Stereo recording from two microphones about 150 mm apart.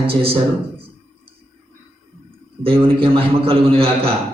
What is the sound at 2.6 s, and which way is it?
A man's voice, 40° right (ahead or behind).